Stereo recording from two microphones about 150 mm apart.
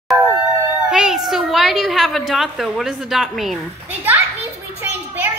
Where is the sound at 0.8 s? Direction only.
5° right (ahead or behind).